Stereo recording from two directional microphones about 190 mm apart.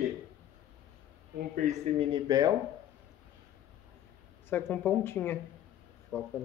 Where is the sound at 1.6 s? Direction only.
35° right (ahead or behind); by 2.5 s 20° right (ahead or behind).